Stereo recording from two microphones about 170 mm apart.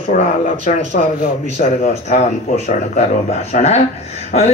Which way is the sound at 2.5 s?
45° left (ahead or behind).